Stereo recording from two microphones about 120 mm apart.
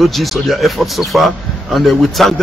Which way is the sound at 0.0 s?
Centre (ahead or behind).